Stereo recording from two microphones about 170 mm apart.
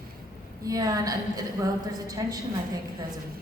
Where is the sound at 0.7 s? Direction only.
20° right (ahead or behind).